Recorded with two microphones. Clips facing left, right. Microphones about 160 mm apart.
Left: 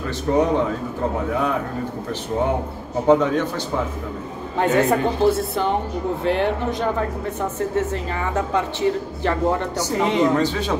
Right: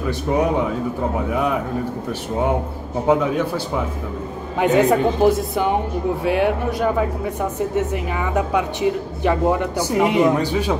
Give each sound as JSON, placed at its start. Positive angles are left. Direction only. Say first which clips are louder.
{"t": 0.3, "sound": "speech", "louder": "left 2 dB", "side_deg": -15}
{"t": 3.1, "sound": "speech", "louder": "left 1 dB", "side_deg": -10}